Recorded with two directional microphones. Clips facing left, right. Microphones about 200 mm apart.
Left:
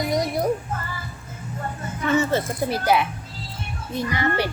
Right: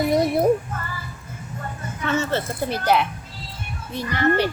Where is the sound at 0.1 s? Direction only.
25° right (ahead or behind).